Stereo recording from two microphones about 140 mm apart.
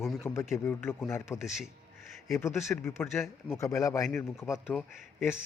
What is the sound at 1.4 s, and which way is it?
Speech, centre (ahead or behind).